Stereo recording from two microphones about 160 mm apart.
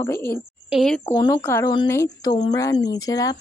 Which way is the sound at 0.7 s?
Centre (ahead or behind).